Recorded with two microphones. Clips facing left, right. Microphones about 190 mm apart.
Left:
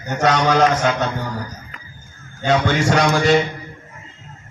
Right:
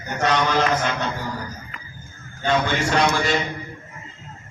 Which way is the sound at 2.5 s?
80° left.